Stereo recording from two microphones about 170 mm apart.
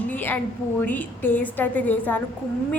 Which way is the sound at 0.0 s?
10° left (ahead or behind).